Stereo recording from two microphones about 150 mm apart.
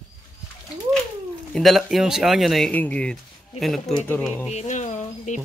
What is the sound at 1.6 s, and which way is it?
Speech, centre (ahead or behind).